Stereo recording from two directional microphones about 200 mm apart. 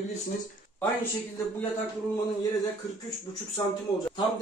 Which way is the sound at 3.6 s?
20° left (ahead or behind).